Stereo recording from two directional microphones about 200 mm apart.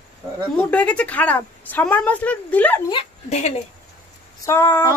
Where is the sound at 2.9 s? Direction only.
30° left (ahead or behind).